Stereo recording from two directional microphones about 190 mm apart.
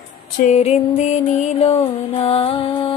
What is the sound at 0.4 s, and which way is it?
Music, 35° left (ahead or behind).